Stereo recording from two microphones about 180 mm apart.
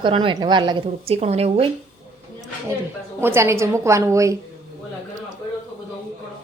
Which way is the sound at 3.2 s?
15° right (ahead or behind).